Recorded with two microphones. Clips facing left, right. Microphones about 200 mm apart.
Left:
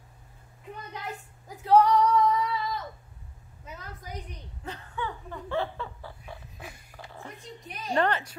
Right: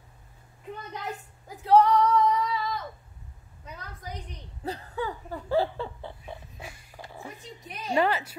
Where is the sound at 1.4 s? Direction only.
Centre (ahead or behind).